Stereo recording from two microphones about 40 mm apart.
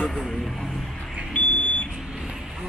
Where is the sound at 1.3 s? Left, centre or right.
Left.